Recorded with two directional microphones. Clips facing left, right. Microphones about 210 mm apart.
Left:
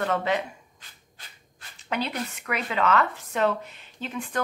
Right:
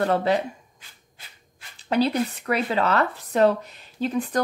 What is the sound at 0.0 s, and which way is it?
Speech, 35° right (ahead or behind).